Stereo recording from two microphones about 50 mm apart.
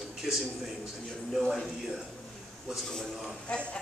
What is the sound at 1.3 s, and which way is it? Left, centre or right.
Speech, centre.